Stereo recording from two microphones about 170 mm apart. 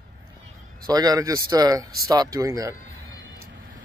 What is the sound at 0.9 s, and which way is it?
Speech, 20° right (ahead or behind).